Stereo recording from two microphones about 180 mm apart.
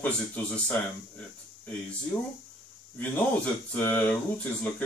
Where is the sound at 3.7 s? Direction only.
10° left (ahead or behind).